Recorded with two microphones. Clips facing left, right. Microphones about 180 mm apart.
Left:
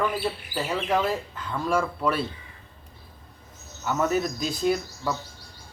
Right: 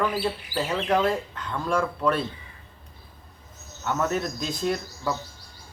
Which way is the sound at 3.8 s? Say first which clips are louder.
Left 2 dB; 5° left (ahead or behind).